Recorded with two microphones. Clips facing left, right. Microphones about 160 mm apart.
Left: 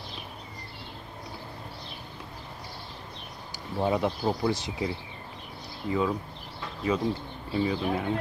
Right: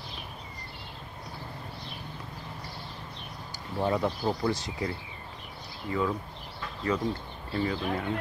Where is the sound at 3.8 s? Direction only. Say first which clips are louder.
Left 1 dB; 10° left (ahead or behind).